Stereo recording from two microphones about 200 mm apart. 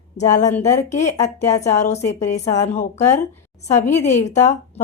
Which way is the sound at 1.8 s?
35° left (ahead or behind).